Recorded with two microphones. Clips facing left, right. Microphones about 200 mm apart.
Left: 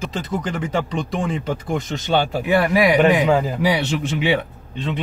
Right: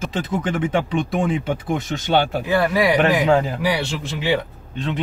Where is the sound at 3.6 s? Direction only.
20° left (ahead or behind).